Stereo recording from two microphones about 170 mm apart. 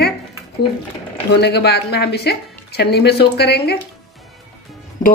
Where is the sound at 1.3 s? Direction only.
75° left (ahead or behind).